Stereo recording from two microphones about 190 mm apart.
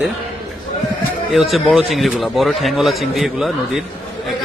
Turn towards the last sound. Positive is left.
turn(degrees=0)  # may be behind; listen again after turning